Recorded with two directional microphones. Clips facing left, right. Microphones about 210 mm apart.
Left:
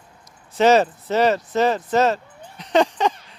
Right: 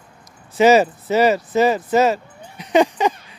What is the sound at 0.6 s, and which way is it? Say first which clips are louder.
Speech: right 2 dB; 5° right (ahead or behind).